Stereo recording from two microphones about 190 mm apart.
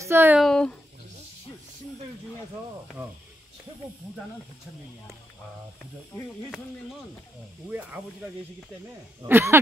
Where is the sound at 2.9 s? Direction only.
5° right (ahead or behind).